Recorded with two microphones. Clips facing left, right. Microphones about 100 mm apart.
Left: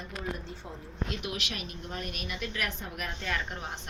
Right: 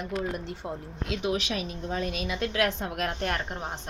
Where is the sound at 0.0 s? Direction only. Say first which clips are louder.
Right 6 dB; 70° right (ahead or behind).